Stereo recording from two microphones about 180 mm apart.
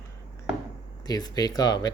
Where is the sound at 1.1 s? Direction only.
20° left (ahead or behind).